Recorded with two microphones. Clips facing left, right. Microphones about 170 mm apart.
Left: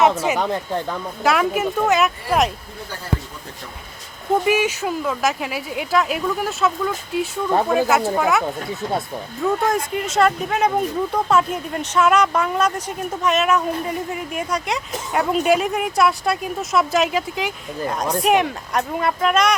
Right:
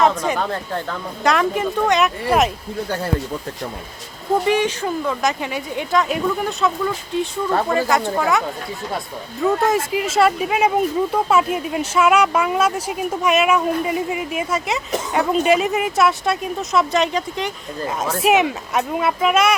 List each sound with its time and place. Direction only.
0.2 s speech: 10° left (ahead or behind)
1.2 s speech: 5° left (ahead or behind)
4.4 s speech: 10° left (ahead or behind)